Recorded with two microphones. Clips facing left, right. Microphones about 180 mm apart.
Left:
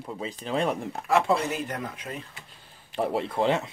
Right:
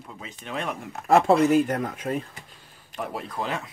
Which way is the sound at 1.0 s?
45° right (ahead or behind).